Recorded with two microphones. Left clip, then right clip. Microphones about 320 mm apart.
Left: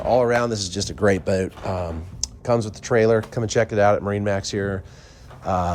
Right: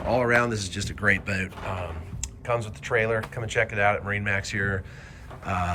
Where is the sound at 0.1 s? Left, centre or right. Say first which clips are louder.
Left 4 dB; centre.